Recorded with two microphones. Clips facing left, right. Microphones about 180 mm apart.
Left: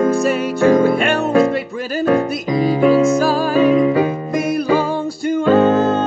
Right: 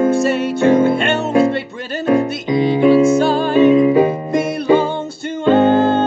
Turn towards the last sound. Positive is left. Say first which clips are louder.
# right 1 dB
turn(degrees=-30)  # may be behind; listen again after turning